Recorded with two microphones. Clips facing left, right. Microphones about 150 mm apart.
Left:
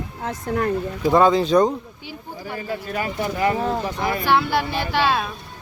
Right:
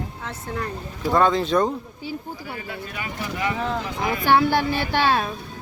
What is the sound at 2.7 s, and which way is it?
Speech, 40° left (ahead or behind).